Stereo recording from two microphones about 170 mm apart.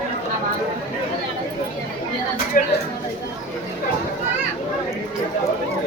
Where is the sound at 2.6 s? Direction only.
55° left (ahead or behind).